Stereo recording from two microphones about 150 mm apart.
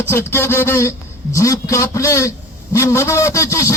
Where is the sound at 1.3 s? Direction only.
20° left (ahead or behind).